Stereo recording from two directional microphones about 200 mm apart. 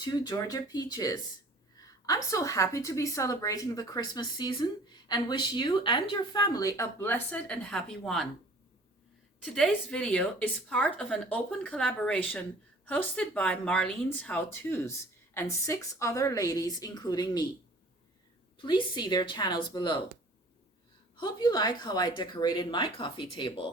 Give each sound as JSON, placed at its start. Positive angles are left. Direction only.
{"t": 0.0, "sound": "a woman's voice", "side_deg": 20}
{"t": 9.4, "sound": "a woman's voice", "side_deg": 5}
{"t": 18.6, "sound": "speech", "side_deg": 25}
{"t": 21.2, "sound": "speech", "side_deg": 20}